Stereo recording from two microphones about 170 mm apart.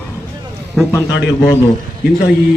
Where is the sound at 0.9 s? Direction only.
15° left (ahead or behind).